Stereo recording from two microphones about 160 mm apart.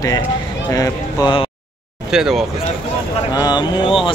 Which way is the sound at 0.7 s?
25° left (ahead or behind).